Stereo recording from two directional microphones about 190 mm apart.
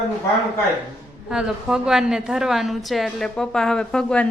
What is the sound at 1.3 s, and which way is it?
A woman's voice, 5° right (ahead or behind).